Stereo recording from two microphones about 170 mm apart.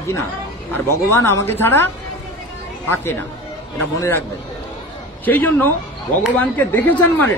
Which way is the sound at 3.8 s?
15° left (ahead or behind).